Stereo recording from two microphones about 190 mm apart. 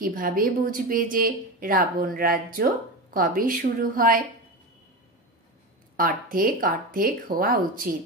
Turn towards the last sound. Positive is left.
turn(degrees=-50)  # may be behind; listen again after turning